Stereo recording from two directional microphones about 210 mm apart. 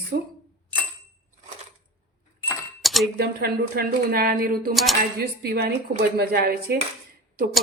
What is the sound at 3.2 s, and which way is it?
A woman's voice, 50° right (ahead or behind).